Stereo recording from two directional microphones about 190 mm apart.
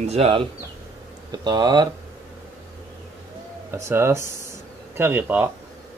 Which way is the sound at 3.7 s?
15° right (ahead or behind).